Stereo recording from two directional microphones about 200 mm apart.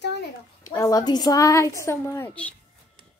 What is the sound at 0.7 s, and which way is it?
A woman's voice, 15° left (ahead or behind).